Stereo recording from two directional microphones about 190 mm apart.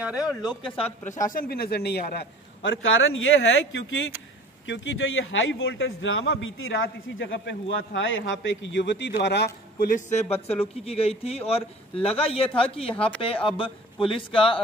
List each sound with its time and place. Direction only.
0.0 s speech: 5° right (ahead or behind)
0.4 s speech: 20° left (ahead or behind)
0.7 s a man's voice: 40° left (ahead or behind)
1.3 s a man's voice: 50° left (ahead or behind); by 3.2 s 85° left
4.6 s a man's voice: 75° left (ahead or behind)
7.2 s a man's voice: 70° left (ahead or behind); by 14.6 s 30° left (ahead or behind)